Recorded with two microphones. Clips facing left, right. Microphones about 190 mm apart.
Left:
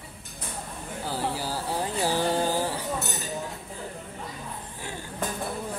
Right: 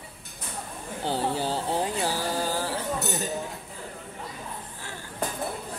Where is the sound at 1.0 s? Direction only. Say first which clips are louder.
Right 3 dB; 25° right (ahead or behind).